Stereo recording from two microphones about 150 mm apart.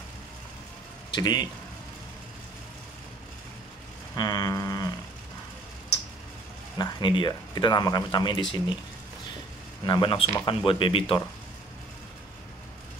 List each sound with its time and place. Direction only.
1.1 s speech: 25° left (ahead or behind)
4.1 s a sound: 25° left (ahead or behind)
6.8 s speech: 30° left (ahead or behind)
9.8 s speech: 30° left (ahead or behind)